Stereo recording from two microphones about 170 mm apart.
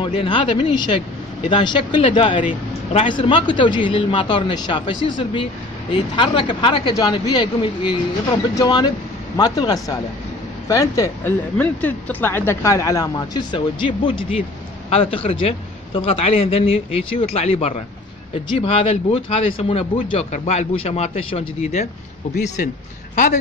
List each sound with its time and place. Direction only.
0.0 s speech: 30° left (ahead or behind)
2.4 s speech: 45° left (ahead or behind)
22.6 s a man's voice: 50° left (ahead or behind)